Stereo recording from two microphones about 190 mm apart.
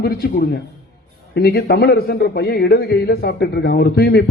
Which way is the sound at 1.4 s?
55° left (ahead or behind).